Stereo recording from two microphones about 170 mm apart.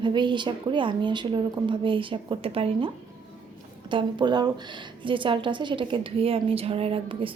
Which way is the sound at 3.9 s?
25° right (ahead or behind).